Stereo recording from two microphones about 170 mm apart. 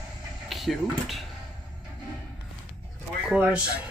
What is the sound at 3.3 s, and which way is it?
Speech, 5° right (ahead or behind).